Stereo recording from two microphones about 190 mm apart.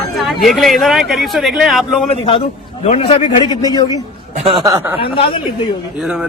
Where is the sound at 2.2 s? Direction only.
30° left (ahead or behind).